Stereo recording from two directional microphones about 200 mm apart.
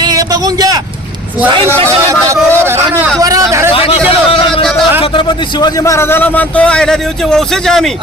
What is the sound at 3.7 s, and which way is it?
A man's voice, 25° left (ahead or behind).